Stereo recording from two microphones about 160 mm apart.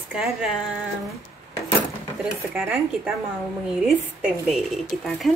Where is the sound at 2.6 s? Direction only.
15° right (ahead or behind).